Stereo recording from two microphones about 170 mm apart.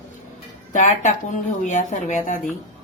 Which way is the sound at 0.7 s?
45° left (ahead or behind).